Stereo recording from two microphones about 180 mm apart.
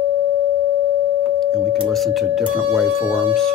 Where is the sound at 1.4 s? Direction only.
5° left (ahead or behind).